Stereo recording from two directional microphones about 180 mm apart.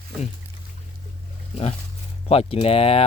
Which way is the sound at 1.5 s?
35° left (ahead or behind).